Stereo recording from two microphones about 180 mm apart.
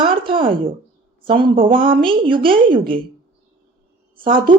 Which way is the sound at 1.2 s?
30° right (ahead or behind).